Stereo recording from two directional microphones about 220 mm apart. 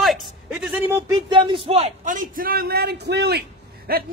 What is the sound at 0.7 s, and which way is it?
A man's voice, 10° right (ahead or behind).